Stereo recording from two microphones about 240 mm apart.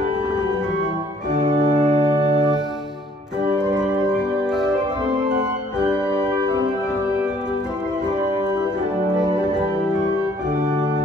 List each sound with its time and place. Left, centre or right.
1.3 s organ: right
3.4 s organ: centre
3.8 s music: centre
6.3 s music: centre